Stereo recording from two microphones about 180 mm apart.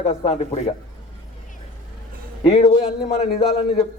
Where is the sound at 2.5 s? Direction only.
35° left (ahead or behind).